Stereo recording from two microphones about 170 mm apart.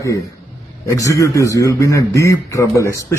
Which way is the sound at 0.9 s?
20° left (ahead or behind).